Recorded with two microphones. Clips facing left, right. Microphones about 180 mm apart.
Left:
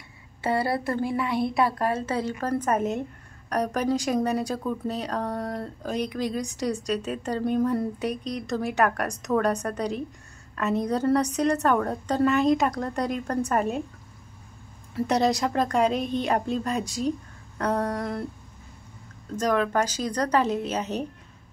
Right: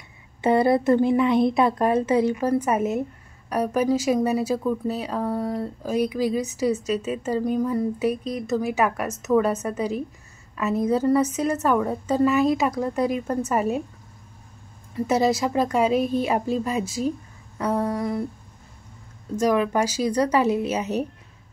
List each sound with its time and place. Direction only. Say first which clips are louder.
0.4 s a woman's voice: right 7 dB; 20° right (ahead or behind); by 13.8 s 5° right (ahead or behind)
15.0 s speech: right 2 dB; 5° right (ahead or behind)
19.3 s speech: right 3 dB; 10° right (ahead or behind)